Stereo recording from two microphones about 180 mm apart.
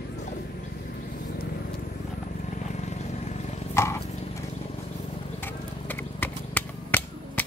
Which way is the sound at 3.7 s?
15° left (ahead or behind).